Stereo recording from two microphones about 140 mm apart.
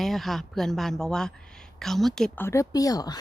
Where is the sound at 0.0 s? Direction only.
Centre (ahead or behind).